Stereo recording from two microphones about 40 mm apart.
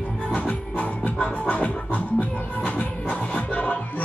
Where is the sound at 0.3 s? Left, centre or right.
Left.